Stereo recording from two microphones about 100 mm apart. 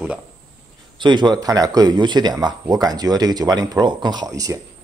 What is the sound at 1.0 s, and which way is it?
Speech, 50° right (ahead or behind).